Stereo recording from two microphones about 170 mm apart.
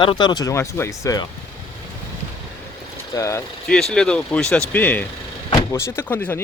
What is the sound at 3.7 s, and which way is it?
Speech, 5° left (ahead or behind).